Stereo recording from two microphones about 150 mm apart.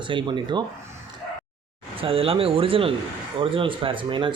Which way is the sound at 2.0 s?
40° right (ahead or behind).